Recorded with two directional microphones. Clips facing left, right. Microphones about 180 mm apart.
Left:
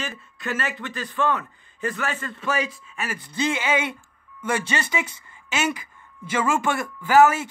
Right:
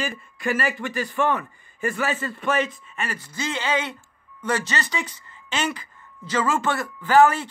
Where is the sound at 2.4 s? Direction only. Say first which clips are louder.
Right 1 dB; 5° left (ahead or behind).